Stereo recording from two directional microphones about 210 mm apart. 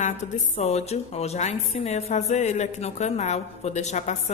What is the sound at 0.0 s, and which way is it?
A woman's voice, 30° left (ahead or behind).